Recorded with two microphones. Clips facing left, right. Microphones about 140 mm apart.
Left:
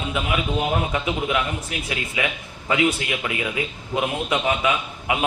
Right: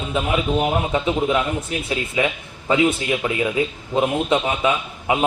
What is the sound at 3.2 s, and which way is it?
A man's voice, 25° right (ahead or behind).